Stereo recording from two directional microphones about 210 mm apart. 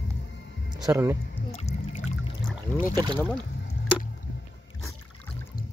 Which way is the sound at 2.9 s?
20° right (ahead or behind).